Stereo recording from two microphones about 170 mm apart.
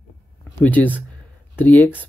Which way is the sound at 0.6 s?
10° left (ahead or behind).